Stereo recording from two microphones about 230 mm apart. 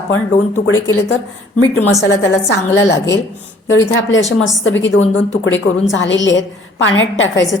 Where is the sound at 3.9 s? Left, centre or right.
Left.